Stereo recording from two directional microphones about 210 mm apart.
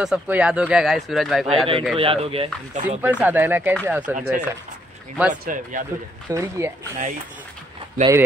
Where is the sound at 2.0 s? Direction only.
25° right (ahead or behind).